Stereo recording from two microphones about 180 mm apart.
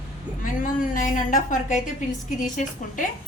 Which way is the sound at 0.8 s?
45° left (ahead or behind).